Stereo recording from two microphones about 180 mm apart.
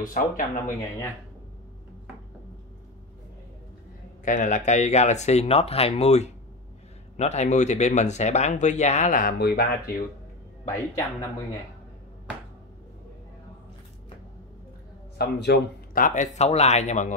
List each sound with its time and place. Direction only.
0.0 s speech: 50° left (ahead or behind)
4.2 s speech: 45° left (ahead or behind)
15.1 s speech: 65° left (ahead or behind)
16.3 s speech: 35° left (ahead or behind)